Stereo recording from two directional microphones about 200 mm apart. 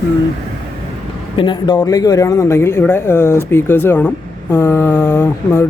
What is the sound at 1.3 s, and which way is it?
Speech, 25° left (ahead or behind).